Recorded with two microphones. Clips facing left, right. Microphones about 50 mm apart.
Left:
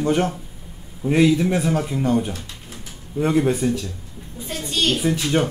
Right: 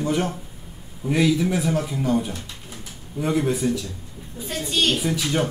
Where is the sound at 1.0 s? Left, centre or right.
Centre.